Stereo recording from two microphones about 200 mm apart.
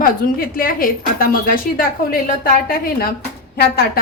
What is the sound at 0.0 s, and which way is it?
A woman's voice, 45° left (ahead or behind).